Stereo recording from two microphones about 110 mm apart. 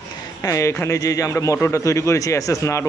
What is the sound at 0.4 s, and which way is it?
Speech, 30° left (ahead or behind).